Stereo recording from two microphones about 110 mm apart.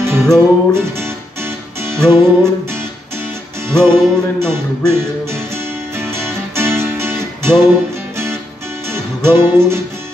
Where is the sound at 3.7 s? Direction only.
25° right (ahead or behind).